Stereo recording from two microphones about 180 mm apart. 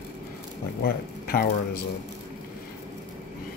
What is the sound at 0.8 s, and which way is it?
Speech, 55° left (ahead or behind).